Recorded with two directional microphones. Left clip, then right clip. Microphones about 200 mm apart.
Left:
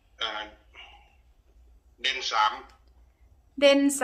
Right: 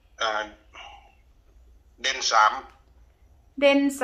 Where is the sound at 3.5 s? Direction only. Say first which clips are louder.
Even; 10° left (ahead or behind).